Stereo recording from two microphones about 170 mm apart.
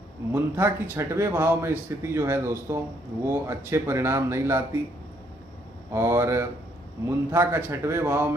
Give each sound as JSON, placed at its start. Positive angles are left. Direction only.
{"t": 0.3, "sound": "speech", "side_deg": -15}
{"t": 5.9, "sound": "speech", "side_deg": -15}